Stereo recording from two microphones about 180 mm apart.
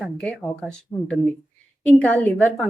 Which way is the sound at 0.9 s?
20° left (ahead or behind).